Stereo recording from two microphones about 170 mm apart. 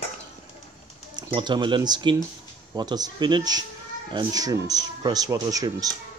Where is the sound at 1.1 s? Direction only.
25° right (ahead or behind).